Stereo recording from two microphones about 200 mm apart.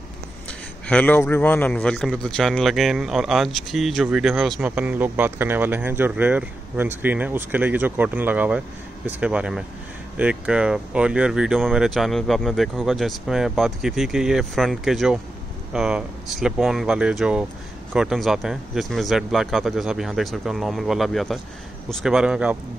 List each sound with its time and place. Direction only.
0.8 s a man's voice: 10° left (ahead or behind)